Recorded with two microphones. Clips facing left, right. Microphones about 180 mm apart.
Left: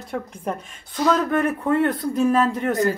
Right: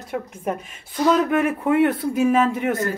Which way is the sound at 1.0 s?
10° right (ahead or behind).